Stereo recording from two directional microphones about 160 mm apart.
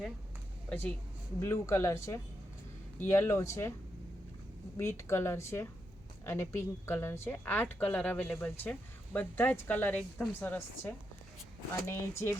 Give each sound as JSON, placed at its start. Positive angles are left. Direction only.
{"t": 0.7, "sound": "a woman's voice", "side_deg": 10}
{"t": 4.8, "sound": "a woman's voice", "side_deg": 15}